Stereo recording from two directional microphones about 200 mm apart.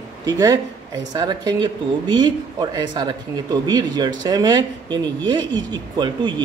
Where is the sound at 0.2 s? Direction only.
20° right (ahead or behind).